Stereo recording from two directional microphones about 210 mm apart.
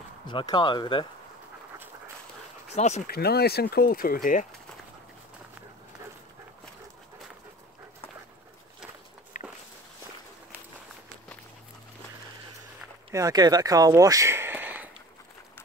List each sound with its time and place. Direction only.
0.3 s speech: 20° left (ahead or behind)
2.7 s speech: 30° left (ahead or behind)
3.1 s speech: 50° left (ahead or behind)
9.3 s walk: 35° left (ahead or behind)
13.1 s speech: 15° right (ahead or behind)